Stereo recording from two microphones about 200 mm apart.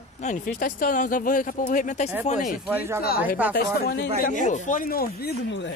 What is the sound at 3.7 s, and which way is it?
Speech, 50° left (ahead or behind).